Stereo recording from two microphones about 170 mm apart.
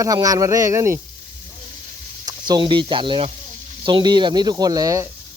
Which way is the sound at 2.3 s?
25° right (ahead or behind).